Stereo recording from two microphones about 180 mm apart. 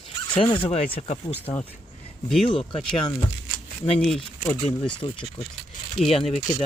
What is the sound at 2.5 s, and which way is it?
Speech, 30° left (ahead or behind).